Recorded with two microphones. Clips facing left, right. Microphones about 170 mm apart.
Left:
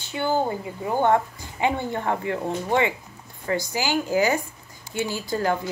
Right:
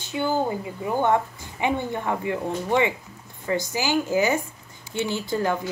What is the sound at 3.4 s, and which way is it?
Speech, 20° right (ahead or behind).